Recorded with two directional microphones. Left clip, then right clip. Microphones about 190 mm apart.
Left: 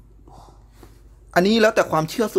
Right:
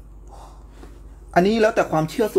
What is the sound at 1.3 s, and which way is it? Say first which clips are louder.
Speech: left 1 dB; 25° left (ahead or behind).